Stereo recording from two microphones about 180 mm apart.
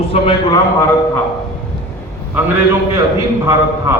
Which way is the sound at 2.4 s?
15° right (ahead or behind).